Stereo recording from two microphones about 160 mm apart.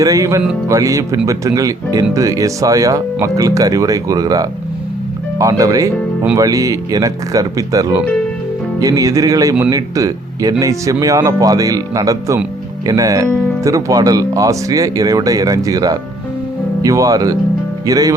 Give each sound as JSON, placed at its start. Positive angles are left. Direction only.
{"t": 0.0, "sound": "speech", "side_deg": -20}